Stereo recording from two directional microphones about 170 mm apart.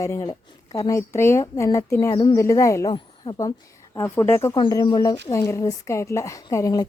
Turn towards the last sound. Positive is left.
turn(degrees=20)  # may be behind; listen again after turning